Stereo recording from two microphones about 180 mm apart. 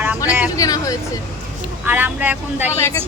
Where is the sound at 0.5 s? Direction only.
20° left (ahead or behind).